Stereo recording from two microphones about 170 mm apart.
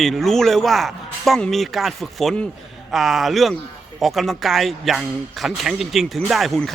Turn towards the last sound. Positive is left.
turn(degrees=0)  # may be behind; listen again after turning